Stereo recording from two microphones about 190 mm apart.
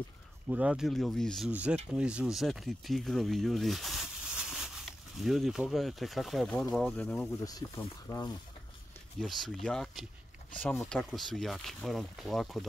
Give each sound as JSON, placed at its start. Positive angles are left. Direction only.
{"t": 0.5, "sound": "speech", "side_deg": -5}
{"t": 7.4, "sound": "speech", "side_deg": 20}
{"t": 9.2, "sound": "speech", "side_deg": 0}